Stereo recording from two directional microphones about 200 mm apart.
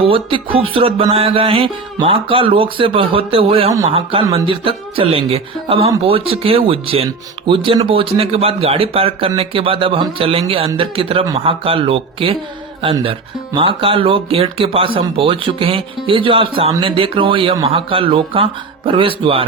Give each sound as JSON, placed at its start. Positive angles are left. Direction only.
{"t": 0.0, "sound": "speech", "side_deg": -25}